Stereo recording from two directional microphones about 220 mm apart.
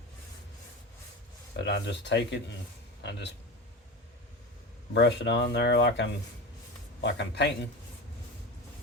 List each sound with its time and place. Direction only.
1.5 s speech: 55° left (ahead or behind)
4.9 s speech: 50° left (ahead or behind)